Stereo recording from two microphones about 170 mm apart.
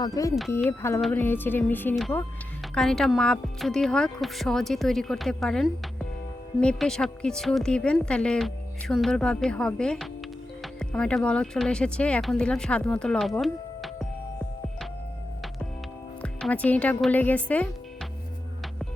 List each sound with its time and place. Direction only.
0.0 s a woman's voice: 20° left (ahead or behind); by 13.9 s centre (ahead or behind)
16.2 s speech: 5° left (ahead or behind)